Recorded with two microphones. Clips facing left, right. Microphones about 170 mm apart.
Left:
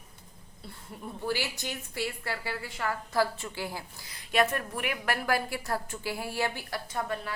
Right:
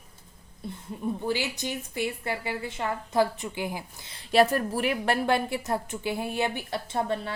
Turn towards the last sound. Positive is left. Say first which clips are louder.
# right 5 dB
turn(degrees=-25)  # may be behind; listen again after turning